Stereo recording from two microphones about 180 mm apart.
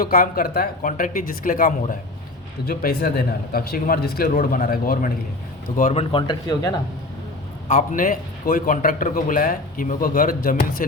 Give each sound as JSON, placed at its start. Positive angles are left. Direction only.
{"t": 0.0, "sound": "a man's voice", "side_deg": 55}
{"t": 5.7, "sound": "speech", "side_deg": 40}
{"t": 7.7, "sound": "a man's voice", "side_deg": 45}